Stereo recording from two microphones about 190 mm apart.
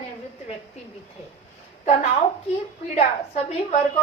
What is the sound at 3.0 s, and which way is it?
Speech, 35° left (ahead or behind).